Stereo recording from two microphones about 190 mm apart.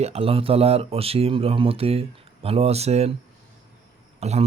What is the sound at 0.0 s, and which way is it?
Speech, 30° right (ahead or behind).